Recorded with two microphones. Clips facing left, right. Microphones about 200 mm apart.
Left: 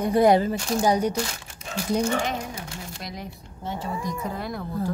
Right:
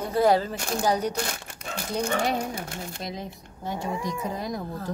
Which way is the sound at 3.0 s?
25° right (ahead or behind).